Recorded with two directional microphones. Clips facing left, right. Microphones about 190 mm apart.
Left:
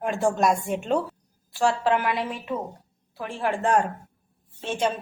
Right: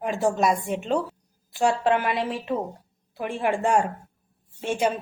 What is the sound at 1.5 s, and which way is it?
Speech, 20° right (ahead or behind).